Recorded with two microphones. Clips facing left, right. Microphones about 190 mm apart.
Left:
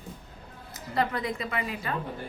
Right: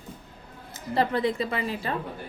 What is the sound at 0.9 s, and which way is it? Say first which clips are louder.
A woman's voice: right 4 dB; 30° right (ahead or behind).